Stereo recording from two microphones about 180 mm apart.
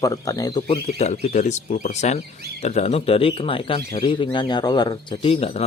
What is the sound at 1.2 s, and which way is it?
A man's voice, 40° left (ahead or behind).